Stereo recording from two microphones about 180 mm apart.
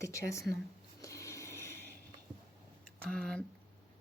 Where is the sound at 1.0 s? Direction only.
15° left (ahead or behind).